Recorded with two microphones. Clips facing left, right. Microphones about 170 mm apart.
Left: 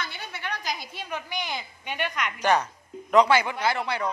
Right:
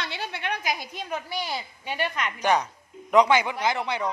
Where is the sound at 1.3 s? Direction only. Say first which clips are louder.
Right 2 dB; 35° right (ahead or behind).